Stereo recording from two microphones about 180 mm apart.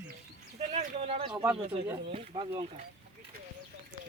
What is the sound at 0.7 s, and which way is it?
Speech, 35° right (ahead or behind).